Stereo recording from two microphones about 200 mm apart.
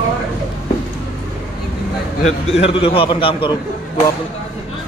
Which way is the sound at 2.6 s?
30° left (ahead or behind).